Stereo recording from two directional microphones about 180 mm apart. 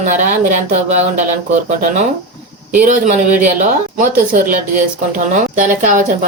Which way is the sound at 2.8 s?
45° right (ahead or behind).